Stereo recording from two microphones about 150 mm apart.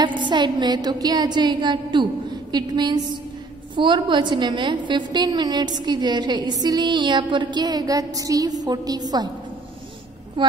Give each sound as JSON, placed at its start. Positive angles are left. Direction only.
{"t": 0.0, "sound": "a woman's voice", "side_deg": -30}